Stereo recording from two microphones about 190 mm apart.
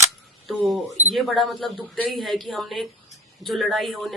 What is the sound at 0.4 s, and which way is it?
Cash register, centre (ahead or behind).